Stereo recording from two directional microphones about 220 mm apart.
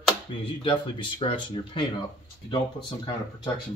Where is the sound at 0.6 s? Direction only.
20° left (ahead or behind).